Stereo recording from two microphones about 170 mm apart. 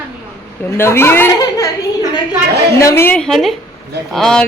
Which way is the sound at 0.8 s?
15° left (ahead or behind).